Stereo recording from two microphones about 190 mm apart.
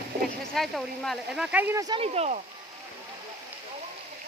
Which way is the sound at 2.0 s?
35° right (ahead or behind).